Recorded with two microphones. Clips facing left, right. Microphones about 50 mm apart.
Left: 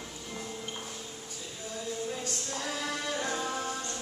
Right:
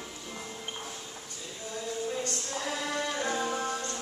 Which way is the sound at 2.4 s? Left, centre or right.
Centre.